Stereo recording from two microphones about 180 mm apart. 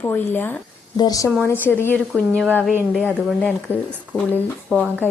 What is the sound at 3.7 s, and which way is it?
Speech, 10° left (ahead or behind).